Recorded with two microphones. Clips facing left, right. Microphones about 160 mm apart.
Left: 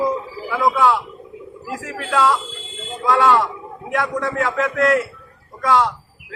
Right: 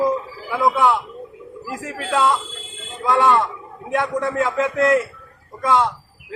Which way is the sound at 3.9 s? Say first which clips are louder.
Right 1 dB; 25° right (ahead or behind).